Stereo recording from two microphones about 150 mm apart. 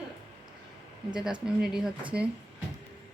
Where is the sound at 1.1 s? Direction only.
5° right (ahead or behind).